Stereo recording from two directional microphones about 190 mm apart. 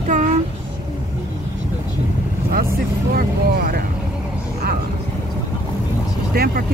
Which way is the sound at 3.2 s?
50° right (ahead or behind).